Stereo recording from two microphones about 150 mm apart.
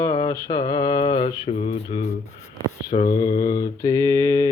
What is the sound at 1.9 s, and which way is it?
Speech, 45° left (ahead or behind).